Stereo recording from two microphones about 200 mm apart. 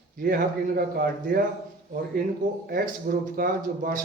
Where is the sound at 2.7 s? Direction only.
45° right (ahead or behind).